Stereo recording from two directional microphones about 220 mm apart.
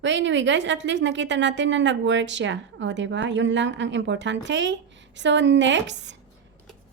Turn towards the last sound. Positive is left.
turn(degrees=-55)  # may be behind; listen again after turning